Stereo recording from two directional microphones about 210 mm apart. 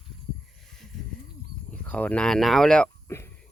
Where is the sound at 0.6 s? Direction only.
Centre (ahead or behind).